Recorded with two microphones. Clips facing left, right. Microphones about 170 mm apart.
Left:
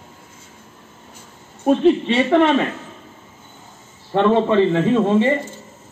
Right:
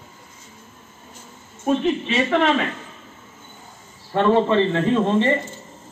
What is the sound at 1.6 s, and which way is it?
Speech, 35° left (ahead or behind).